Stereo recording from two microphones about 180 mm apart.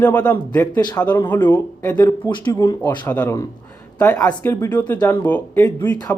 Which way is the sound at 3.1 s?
15° left (ahead or behind).